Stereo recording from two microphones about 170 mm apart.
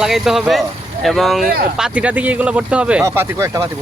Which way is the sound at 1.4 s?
60° right (ahead or behind).